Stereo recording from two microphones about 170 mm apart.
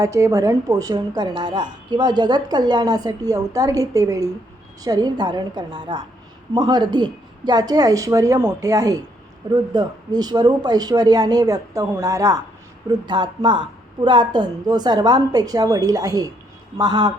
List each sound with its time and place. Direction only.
0.0 s a woman's voice: 20° right (ahead or behind)